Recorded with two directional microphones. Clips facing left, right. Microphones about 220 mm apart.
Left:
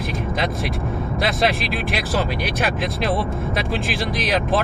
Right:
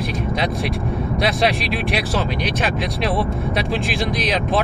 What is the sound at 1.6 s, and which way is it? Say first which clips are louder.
Speech: right 2 dB; centre (ahead or behind).